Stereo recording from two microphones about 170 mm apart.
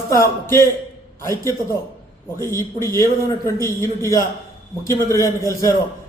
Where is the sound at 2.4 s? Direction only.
15° left (ahead or behind).